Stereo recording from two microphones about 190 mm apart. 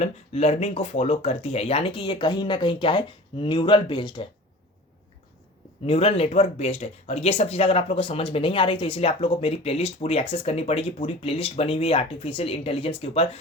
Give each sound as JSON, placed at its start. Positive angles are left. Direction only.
{"t": 0.0, "sound": "speech", "side_deg": 35}
{"t": 5.8, "sound": "speech", "side_deg": 30}